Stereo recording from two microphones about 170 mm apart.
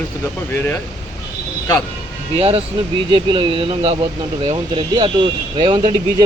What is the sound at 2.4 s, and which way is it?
Speech, 35° right (ahead or behind).